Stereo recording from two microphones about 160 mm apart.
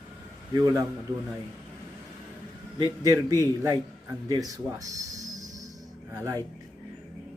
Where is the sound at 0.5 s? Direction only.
20° right (ahead or behind).